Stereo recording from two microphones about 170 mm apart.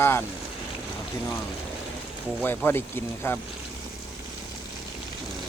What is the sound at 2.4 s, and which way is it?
Speech, 10° left (ahead or behind).